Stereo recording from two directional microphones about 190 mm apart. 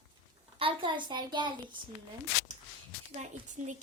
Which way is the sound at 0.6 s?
25° right (ahead or behind).